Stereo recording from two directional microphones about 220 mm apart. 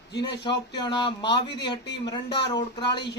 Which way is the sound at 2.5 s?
20° left (ahead or behind).